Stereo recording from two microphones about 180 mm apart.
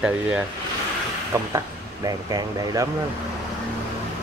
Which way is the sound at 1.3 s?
20° right (ahead or behind).